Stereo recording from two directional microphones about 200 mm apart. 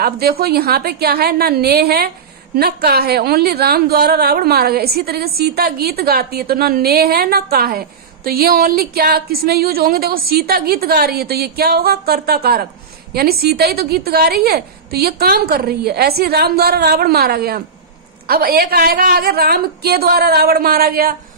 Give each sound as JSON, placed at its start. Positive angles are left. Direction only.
{"t": 0.0, "sound": "a woman's voice", "side_deg": -50}